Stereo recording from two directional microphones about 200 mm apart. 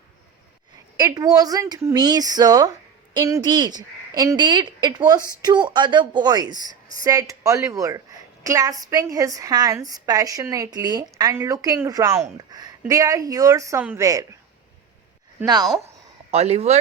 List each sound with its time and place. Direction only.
0.9 s a woman's voice: 20° right (ahead or behind)
16.3 s speech: 30° right (ahead or behind)